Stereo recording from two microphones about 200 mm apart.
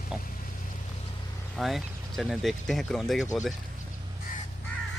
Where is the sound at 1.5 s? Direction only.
Centre (ahead or behind).